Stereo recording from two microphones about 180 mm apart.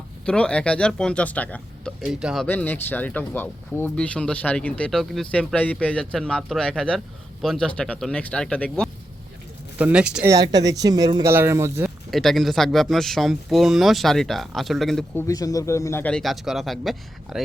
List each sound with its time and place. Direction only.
0.3 s speech: 5° left (ahead or behind)
2.5 s speech: 10° left (ahead or behind)
9.7 s speech: 5° right (ahead or behind)
10.2 s speech: 20° right (ahead or behind)
12.1 s speech: centre (ahead or behind)
15.1 s speech: 20° left (ahead or behind); by 17.4 s centre (ahead or behind)